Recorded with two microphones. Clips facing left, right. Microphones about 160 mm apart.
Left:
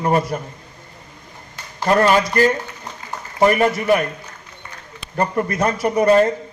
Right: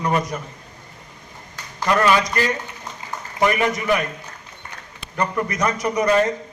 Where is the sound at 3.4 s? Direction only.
35° left (ahead or behind).